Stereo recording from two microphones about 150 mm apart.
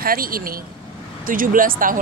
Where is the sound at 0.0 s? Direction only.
75° right (ahead or behind).